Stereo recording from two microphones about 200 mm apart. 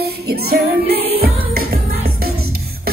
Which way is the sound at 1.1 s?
50° right (ahead or behind).